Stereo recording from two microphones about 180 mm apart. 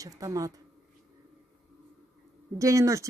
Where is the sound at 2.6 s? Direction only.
15° right (ahead or behind).